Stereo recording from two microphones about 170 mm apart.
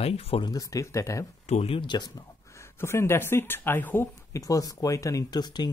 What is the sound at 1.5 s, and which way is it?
Speech, 35° left (ahead or behind).